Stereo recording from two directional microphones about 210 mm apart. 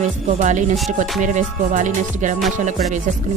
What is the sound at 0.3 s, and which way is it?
Speech, 35° right (ahead or behind).